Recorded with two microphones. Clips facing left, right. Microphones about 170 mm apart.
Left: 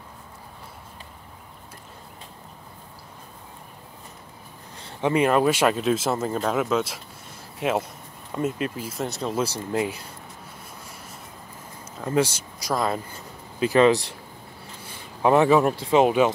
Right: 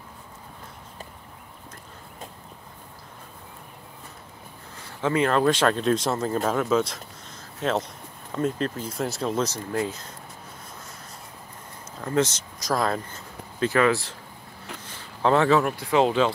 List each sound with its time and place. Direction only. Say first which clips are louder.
4.8 s speech: left 2 dB; 15° left (ahead or behind)
12.0 s speech: left 1 dB; 10° left (ahead or behind)
13.1 s a sound: even; 10° left (ahead or behind)
13.7 s speech: left 5 dB; 20° left (ahead or behind)
14.8 s a sound: left 2 dB; 10° left (ahead or behind)
15.6 s speech: left 3 dB; 25° left (ahead or behind)